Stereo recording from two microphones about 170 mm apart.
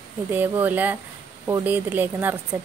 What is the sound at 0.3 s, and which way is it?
Speech, 10° right (ahead or behind).